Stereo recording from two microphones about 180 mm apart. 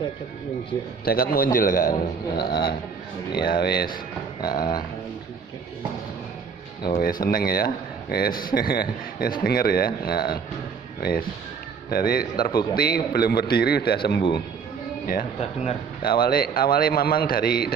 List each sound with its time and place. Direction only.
1.0 s speech: 55° left (ahead or behind)
4.4 s a sound: 25° left (ahead or behind)
7.0 s speech: 55° left (ahead or behind)
15.0 s speech: 50° left (ahead or behind)